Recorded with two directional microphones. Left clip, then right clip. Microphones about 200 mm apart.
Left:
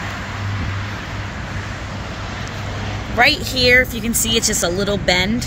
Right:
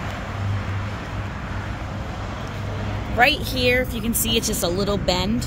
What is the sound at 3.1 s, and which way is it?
Speech, 5° left (ahead or behind).